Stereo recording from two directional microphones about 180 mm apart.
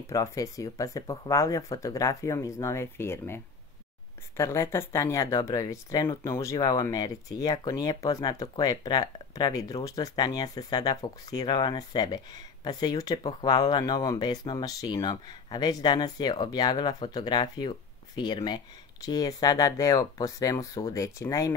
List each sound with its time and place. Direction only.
0.0 s speech: 20° left (ahead or behind)
4.4 s speech: 15° left (ahead or behind)